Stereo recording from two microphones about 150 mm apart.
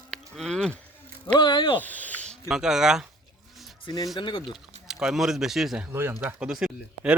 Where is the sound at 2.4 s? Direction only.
5° right (ahead or behind).